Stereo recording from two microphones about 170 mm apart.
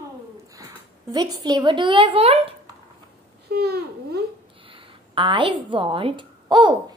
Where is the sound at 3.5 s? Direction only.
70° right (ahead or behind).